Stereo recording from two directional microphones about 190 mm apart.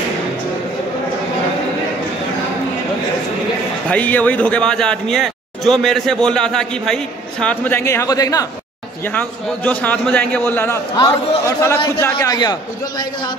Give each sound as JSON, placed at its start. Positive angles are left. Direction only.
{"t": 3.9, "sound": "a man's voice", "side_deg": 10}